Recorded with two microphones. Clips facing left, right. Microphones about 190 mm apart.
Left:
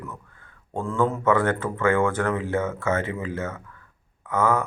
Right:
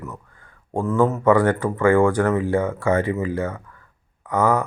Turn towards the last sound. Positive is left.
turn(degrees=-15)  # may be behind; listen again after turning